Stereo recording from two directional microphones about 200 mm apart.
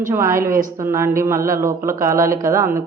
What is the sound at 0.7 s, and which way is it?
Speech, 15° right (ahead or behind).